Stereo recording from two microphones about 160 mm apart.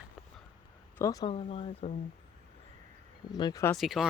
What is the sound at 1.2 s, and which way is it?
Speech, 40° left (ahead or behind).